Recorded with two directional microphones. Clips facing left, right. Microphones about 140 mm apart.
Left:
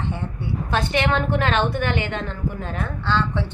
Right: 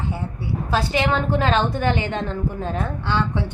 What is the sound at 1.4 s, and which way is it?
Speech, 15° right (ahead or behind).